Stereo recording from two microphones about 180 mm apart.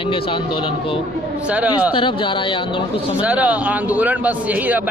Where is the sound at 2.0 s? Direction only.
30° left (ahead or behind).